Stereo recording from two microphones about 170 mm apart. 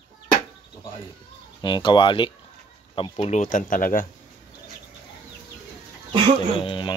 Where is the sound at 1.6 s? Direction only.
30° left (ahead or behind).